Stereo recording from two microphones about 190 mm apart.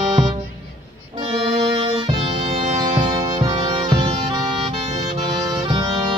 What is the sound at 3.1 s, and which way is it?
Saxophone, 20° right (ahead or behind).